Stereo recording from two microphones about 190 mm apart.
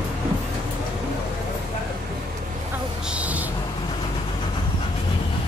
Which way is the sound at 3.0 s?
5° right (ahead or behind).